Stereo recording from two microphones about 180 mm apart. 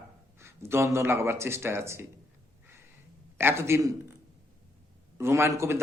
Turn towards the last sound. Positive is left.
turn(degrees=-15)  # may be behind; listen again after turning